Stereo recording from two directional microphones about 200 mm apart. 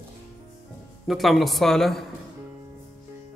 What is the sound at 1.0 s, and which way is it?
Speech, centre (ahead or behind).